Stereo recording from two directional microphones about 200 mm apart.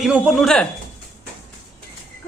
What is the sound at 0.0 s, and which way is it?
Speech, 5° right (ahead or behind).